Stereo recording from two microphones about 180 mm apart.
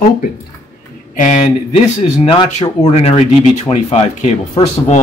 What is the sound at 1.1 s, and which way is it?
Speech, 45° left (ahead or behind).